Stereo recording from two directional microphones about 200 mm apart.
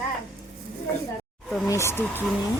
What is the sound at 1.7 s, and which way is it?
Speech, 15° left (ahead or behind).